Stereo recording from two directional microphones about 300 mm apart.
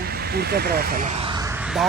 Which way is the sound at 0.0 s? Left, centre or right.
Right.